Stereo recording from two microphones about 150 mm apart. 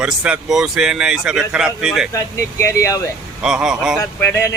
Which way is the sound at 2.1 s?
20° left (ahead or behind).